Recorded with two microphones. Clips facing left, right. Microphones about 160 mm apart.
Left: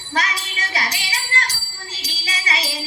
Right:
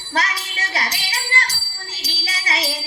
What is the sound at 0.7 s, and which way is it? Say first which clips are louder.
Music: even; 35° right (ahead or behind).